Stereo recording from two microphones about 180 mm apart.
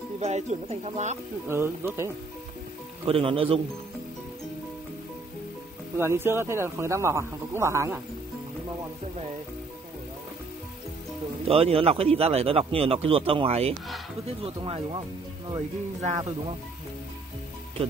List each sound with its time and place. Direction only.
0.2 s a man's voice: 40° right (ahead or behind)
1.5 s speech: 15° right (ahead or behind)
3.1 s a man's voice: 30° right (ahead or behind)
5.9 s speech: 15° right (ahead or behind)
11.4 s a man's voice: 35° right (ahead or behind)